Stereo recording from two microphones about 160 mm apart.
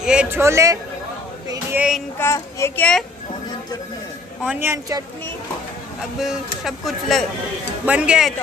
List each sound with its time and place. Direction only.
0.0 s a sound: 5° right (ahead or behind)
0.4 s speech: 20° right (ahead or behind)
2.1 s a child's voice: 15° left (ahead or behind)
4.5 s speech: 15° right (ahead or behind)
6.1 s speech: centre (ahead or behind)